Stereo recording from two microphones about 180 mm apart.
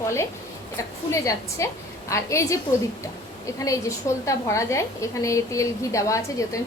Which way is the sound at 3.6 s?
15° left (ahead or behind).